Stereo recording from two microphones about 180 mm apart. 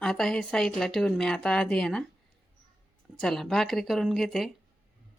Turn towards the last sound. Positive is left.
turn(degrees=0)  # may be behind; listen again after turning